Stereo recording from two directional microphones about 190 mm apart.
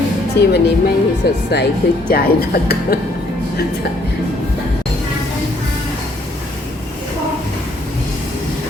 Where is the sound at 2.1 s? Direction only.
55° left (ahead or behind).